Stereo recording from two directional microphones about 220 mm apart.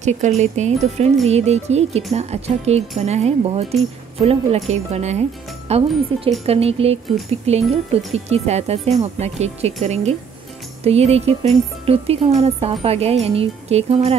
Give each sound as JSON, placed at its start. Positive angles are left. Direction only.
{"t": 0.4, "sound": "speech", "side_deg": -30}